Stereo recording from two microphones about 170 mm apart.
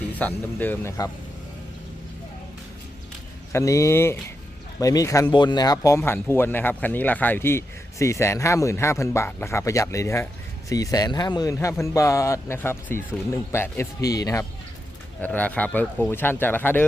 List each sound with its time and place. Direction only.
0.2 s speech: 10° left (ahead or behind)
3.5 s speech: 20° left (ahead or behind)
15.2 s speech: 10° left (ahead or behind)